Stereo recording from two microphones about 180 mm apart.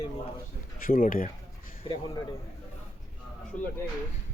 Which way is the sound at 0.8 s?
50° left (ahead or behind).